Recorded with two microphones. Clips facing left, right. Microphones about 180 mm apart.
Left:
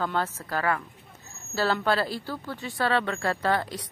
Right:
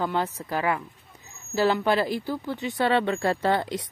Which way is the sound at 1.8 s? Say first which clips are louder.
Right 3 dB; 15° right (ahead or behind).